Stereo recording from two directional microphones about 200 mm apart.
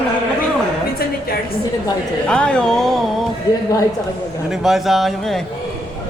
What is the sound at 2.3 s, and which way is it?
Speech, 5° left (ahead or behind).